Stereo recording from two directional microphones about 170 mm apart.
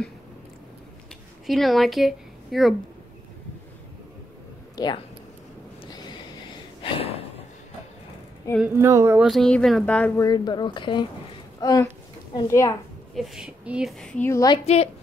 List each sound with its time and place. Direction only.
1.5 s speech: centre (ahead or behind)
4.7 s speech: 25° left (ahead or behind)
5.9 s a sound: 25° left (ahead or behind)
6.8 s gasp: 35° left (ahead or behind)
8.6 s speech: 15° right (ahead or behind)
9.3 s speech: 5° left (ahead or behind)
10.2 s speech: 25° left (ahead or behind)
13.1 s speech: centre (ahead or behind)
14.2 s speech: 20° left (ahead or behind)